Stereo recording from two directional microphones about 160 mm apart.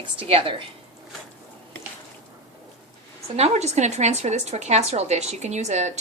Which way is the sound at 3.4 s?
45° right (ahead or behind).